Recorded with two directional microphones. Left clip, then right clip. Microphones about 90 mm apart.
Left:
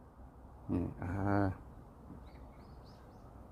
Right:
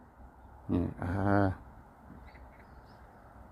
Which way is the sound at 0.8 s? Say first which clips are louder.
Right 5 dB; 30° right (ahead or behind).